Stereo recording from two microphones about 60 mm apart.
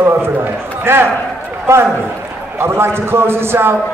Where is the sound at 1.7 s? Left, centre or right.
Right.